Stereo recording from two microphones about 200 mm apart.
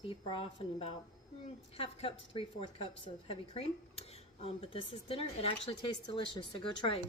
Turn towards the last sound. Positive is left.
turn(degrees=25)  # may be behind; listen again after turning